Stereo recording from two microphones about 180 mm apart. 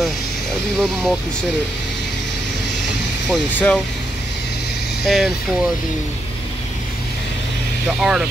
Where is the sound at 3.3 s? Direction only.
5° left (ahead or behind).